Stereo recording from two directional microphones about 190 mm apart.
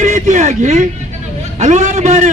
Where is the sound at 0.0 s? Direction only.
40° right (ahead or behind).